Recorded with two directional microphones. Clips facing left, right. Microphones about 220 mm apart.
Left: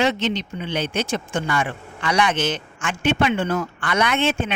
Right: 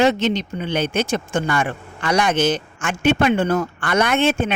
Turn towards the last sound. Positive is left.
turn(degrees=-40)  # may be behind; listen again after turning